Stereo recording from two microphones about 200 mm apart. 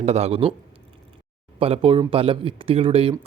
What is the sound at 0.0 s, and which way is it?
Speech, 35° right (ahead or behind).